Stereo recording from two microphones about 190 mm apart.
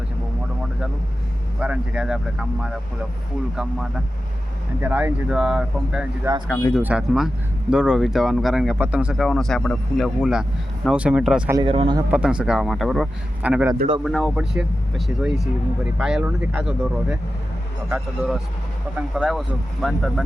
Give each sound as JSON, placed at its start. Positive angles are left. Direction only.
{"t": 1.5, "sound": "speech", "side_deg": -5}
{"t": 6.5, "sound": "speech", "side_deg": 15}
{"t": 6.7, "sound": "speech", "side_deg": -5}
{"t": 11.5, "sound": "speech", "side_deg": -30}
{"t": 12.1, "sound": "speech", "side_deg": -5}